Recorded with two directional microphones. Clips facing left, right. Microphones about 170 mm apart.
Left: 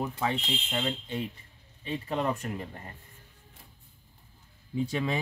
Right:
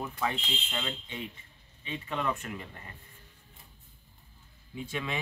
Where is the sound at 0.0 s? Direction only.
25° left (ahead or behind).